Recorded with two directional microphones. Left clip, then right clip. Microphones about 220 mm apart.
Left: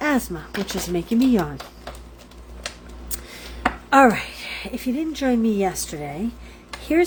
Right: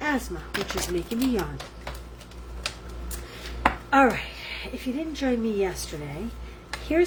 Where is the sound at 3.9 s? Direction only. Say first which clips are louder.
Left 7 dB; 50° left (ahead or behind).